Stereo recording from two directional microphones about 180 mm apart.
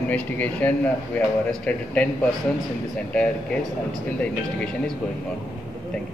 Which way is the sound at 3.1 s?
5° left (ahead or behind).